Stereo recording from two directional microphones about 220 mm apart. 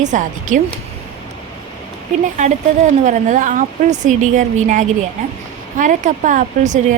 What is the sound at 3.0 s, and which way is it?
A woman's voice, 35° right (ahead or behind).